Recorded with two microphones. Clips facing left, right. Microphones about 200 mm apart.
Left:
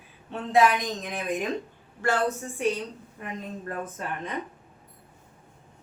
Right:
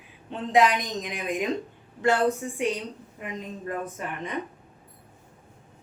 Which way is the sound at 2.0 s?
20° right (ahead or behind).